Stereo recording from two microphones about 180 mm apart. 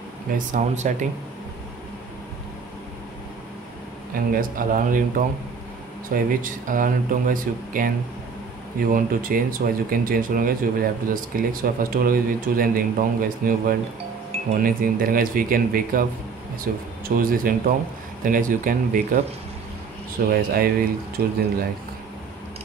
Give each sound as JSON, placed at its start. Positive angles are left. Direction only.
{"t": 0.3, "sound": "speech", "side_deg": -45}
{"t": 4.1, "sound": "speech", "side_deg": -50}
{"t": 8.9, "sound": "speech", "side_deg": -50}
{"t": 20.2, "sound": "speech", "side_deg": -55}